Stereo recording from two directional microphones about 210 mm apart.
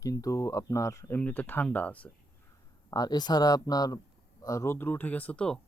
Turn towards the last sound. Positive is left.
turn(degrees=5)  # may be behind; listen again after turning